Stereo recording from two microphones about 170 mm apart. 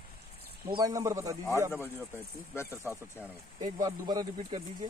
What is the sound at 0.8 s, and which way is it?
Speech, 20° right (ahead or behind).